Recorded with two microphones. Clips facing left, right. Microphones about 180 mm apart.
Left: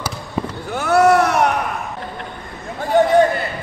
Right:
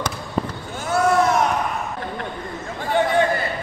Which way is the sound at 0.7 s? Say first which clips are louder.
Left 5 dB; 70° left (ahead or behind).